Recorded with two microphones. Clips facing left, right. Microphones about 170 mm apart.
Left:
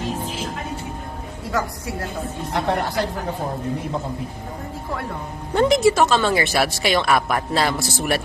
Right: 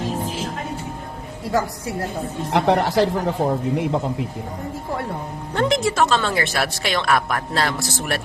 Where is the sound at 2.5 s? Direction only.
75° right (ahead or behind).